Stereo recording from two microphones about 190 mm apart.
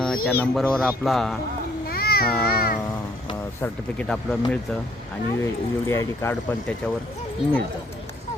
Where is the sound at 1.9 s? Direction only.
55° left (ahead or behind).